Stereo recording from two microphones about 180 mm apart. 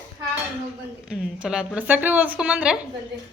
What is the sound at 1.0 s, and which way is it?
A woman's voice, 5° right (ahead or behind).